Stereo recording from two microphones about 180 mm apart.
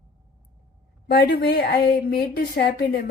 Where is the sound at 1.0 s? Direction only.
60° left (ahead or behind).